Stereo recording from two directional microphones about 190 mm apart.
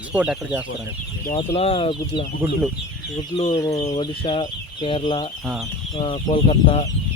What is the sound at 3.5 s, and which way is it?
Speech, 20° left (ahead or behind).